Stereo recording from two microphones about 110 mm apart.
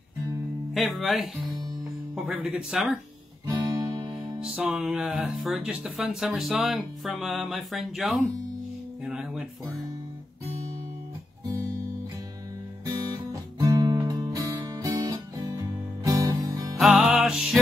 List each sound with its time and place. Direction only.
0.7 s speech: centre (ahead or behind)
3.4 s guitar: 40° right (ahead or behind)
4.4 s speech: 10° right (ahead or behind)
9.0 s music: 5° right (ahead or behind)
12.8 s music: 35° right (ahead or behind)
16.7 s music: centre (ahead or behind)